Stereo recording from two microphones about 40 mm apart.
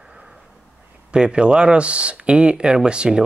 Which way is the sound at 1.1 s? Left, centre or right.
Right.